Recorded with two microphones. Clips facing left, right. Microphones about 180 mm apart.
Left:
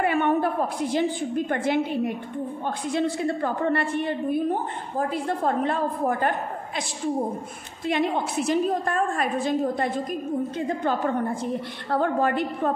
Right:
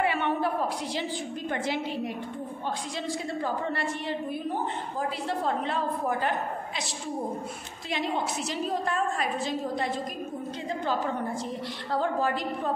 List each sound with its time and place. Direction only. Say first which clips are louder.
0.0 s a woman's voice: left 5 dB; 50° left (ahead or behind)
7.9 s a woman's voice: left 5 dB; 55° left (ahead or behind)